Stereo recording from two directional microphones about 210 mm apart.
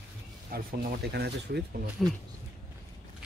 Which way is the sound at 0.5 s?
50° right (ahead or behind).